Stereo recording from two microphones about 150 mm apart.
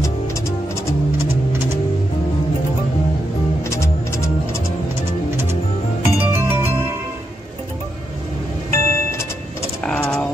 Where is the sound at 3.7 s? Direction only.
20° left (ahead or behind).